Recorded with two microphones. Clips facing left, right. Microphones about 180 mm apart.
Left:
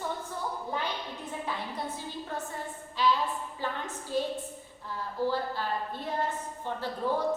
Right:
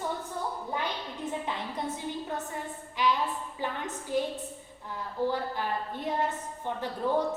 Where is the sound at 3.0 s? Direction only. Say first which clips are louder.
Left 1 dB; 15° right (ahead or behind).